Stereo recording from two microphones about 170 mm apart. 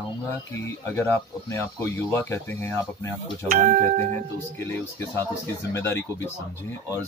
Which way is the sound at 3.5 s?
45° right (ahead or behind).